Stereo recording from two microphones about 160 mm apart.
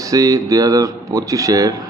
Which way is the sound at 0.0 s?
20° right (ahead or behind).